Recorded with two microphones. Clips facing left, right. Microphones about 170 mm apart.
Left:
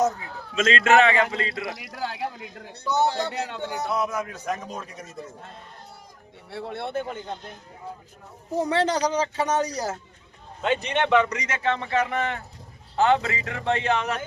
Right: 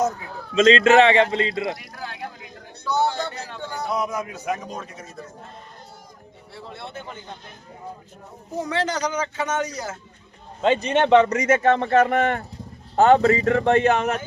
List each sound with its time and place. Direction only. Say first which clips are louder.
0.5 s a man's voice: right 5 dB; 30° right (ahead or behind)
1.8 s speech: left 4 dB; 85° left
2.8 s a man's voice: right 1 dB; 20° left (ahead or behind)
3.8 s speech: right 2 dB; 15° right (ahead or behind); by 4.9 s 5° left (ahead or behind)
6.5 s speech: left 7 dB; 60° left (ahead or behind)
8.5 s a man's voice: left 2 dB; 30° left (ahead or behind)
10.6 s a man's voice: right 5 dB; 30° right (ahead or behind)
11.1 s a man's voice: right 8 dB; 45° right (ahead or behind)